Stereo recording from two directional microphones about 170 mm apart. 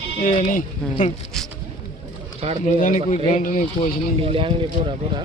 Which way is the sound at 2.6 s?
45° left (ahead or behind).